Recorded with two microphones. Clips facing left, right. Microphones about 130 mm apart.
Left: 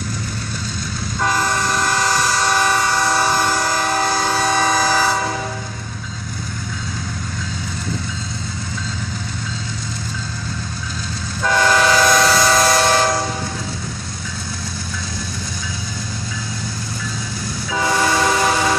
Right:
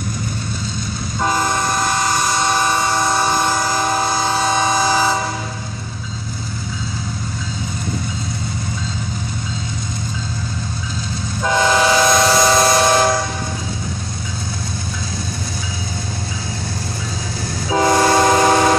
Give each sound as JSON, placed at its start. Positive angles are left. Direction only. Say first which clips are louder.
{"t": 1.2, "sound": "vehicle", "louder": "right 1 dB", "side_deg": -15}
{"t": 2.5, "sound": "train", "louder": "even", "side_deg": -15}
{"t": 11.4, "sound": "train", "louder": "even", "side_deg": -15}
{"t": 17.6, "sound": "train", "louder": "right 5 dB", "side_deg": -40}